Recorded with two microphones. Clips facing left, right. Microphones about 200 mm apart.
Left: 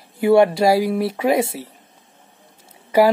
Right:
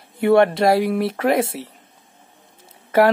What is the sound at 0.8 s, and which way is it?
Speech, 25° left (ahead or behind).